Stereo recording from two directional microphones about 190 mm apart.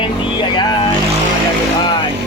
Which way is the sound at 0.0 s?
25° left (ahead or behind).